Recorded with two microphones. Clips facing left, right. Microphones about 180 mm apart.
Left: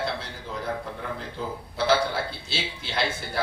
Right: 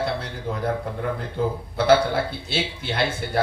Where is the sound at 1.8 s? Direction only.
55° right (ahead or behind).